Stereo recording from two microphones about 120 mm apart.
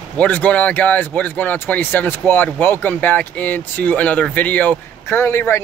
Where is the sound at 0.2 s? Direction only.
15° left (ahead or behind).